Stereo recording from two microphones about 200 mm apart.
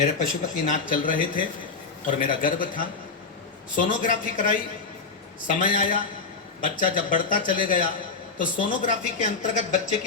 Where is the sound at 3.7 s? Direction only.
40° left (ahead or behind).